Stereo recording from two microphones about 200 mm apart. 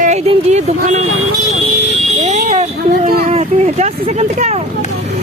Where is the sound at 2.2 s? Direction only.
35° right (ahead or behind).